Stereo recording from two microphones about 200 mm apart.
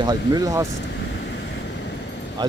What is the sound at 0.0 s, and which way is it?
Speech, 20° right (ahead or behind).